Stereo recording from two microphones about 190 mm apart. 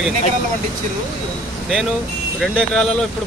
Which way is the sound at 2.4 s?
Centre (ahead or behind).